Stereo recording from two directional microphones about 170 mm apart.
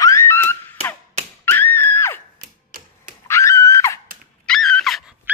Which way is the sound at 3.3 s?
15° left (ahead or behind).